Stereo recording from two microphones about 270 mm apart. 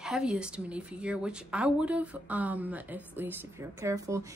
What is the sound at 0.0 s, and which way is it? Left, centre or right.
A woman's voice, centre.